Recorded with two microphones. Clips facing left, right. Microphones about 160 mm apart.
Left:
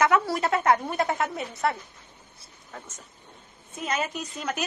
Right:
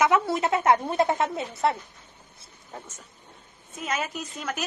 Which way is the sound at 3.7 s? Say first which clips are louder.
Left 1 dB; 5° right (ahead or behind).